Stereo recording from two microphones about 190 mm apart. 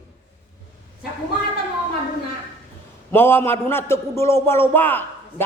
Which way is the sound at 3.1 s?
10° left (ahead or behind).